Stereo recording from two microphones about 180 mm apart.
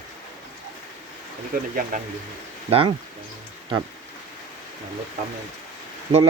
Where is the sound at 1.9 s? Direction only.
50° right (ahead or behind).